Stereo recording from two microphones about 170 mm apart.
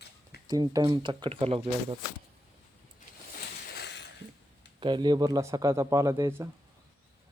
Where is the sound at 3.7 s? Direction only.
85° left.